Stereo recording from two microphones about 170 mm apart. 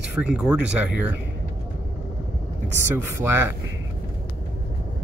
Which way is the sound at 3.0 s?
15° right (ahead or behind).